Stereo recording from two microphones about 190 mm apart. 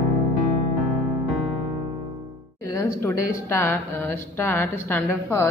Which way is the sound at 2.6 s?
15° left (ahead or behind).